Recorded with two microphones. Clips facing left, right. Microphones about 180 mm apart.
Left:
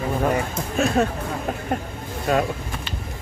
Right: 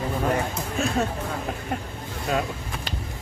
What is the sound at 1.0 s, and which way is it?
Speech, 65° left (ahead or behind).